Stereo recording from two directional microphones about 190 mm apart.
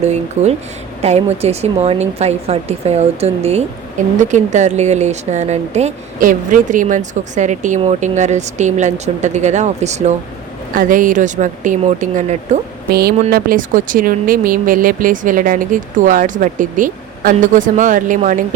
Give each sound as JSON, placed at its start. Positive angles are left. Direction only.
{"t": 0.0, "sound": "speech", "side_deg": -35}
{"t": 12.9, "sound": "speech", "side_deg": -55}